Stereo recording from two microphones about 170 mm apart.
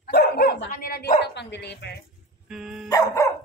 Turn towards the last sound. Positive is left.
turn(degrees=15)  # may be behind; listen again after turning